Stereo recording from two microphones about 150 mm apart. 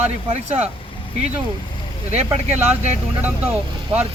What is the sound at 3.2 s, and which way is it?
Speech, 10° right (ahead or behind).